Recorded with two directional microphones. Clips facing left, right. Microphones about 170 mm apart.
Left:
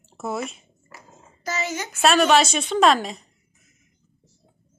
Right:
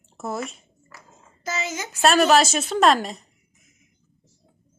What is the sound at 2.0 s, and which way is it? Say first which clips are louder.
A woman's voice: even; centre (ahead or behind).